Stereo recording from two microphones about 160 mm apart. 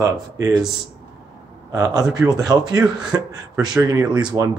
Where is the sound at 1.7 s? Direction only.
25° right (ahead or behind).